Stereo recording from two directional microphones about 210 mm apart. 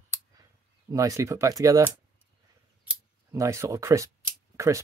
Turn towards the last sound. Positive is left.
turn(degrees=-15)  # may be behind; listen again after turning